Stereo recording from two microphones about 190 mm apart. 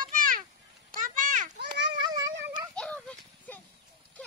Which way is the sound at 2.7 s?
5° left (ahead or behind).